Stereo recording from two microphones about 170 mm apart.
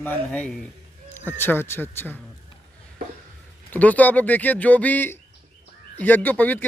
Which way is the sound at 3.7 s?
10° left (ahead or behind).